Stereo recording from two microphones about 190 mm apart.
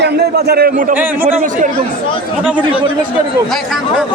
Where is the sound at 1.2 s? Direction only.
45° right (ahead or behind).